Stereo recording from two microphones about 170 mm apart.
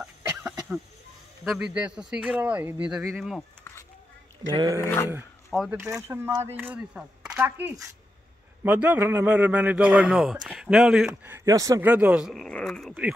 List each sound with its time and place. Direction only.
0.0 s cough: 5° right (ahead or behind)
1.4 s a man's voice: 5° right (ahead or behind)
3.7 s a sound: 15° left (ahead or behind)
4.6 s speech: 20° right (ahead or behind)
4.8 s speech: 15° left (ahead or behind)
5.5 s speech: centre (ahead or behind)
5.9 s a man's voice: 15° right (ahead or behind)
11.1 s speech: 15° right (ahead or behind); by 12.9 s 5° left (ahead or behind)